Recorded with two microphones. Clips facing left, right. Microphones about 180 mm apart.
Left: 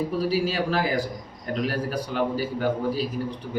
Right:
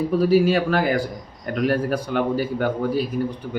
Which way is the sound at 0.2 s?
55° right (ahead or behind).